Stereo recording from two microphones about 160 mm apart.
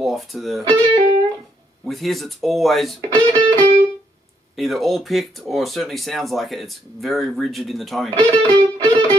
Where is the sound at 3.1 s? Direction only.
30° right (ahead or behind).